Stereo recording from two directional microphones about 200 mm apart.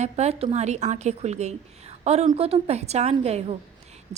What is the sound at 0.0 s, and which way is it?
A woman's voice, 35° right (ahead or behind).